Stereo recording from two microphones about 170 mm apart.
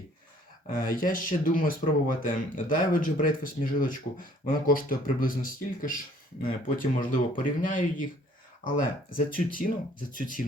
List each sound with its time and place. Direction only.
0.7 s speech: 55° left (ahead or behind)